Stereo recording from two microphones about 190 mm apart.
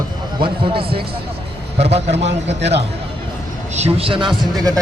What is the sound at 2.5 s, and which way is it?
Speech, 65° right (ahead or behind).